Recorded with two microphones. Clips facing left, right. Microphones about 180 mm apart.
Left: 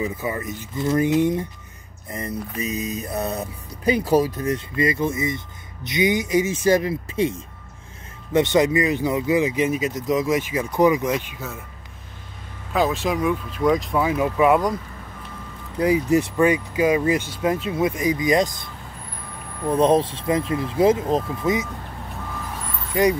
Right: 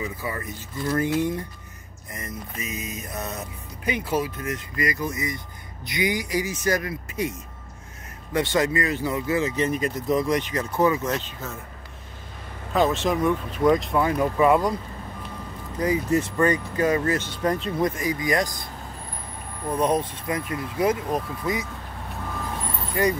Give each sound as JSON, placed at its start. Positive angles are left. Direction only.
{"t": 0.0, "sound": "speech", "side_deg": 20}
{"t": 2.0, "sound": "music", "side_deg": 30}
{"t": 5.9, "sound": "speech", "side_deg": 20}
{"t": 12.7, "sound": "speech", "side_deg": 0}
{"t": 15.8, "sound": "speech", "side_deg": 10}
{"t": 17.9, "sound": "speech", "side_deg": 20}
{"t": 19.8, "sound": "speech", "side_deg": 30}
{"t": 23.0, "sound": "speech", "side_deg": 15}